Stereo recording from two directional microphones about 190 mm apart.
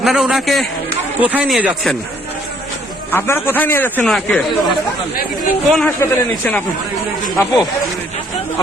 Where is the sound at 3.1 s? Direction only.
10° left (ahead or behind).